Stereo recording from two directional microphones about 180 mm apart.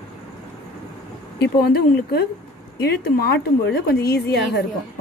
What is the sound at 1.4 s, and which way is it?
A woman's voice, 60° left (ahead or behind).